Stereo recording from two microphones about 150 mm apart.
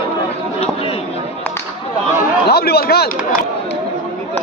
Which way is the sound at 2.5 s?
90° left.